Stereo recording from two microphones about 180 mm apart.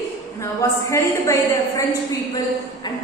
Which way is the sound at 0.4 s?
15° left (ahead or behind).